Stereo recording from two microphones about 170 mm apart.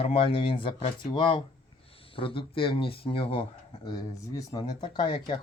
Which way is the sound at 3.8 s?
20° left (ahead or behind).